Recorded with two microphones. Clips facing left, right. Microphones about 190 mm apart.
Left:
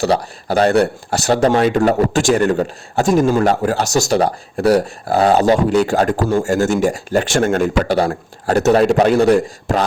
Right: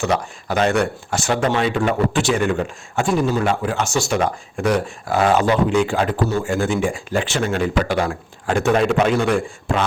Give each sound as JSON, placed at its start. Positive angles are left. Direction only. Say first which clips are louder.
{"t": 0.0, "sound": "speech", "louder": "left 4 dB", "side_deg": 35}